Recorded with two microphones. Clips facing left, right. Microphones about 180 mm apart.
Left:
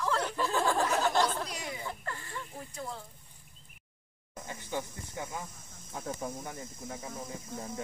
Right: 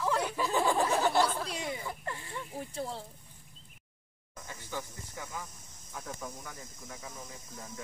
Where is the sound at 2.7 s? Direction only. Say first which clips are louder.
Right 3 dB; 30° right (ahead or behind).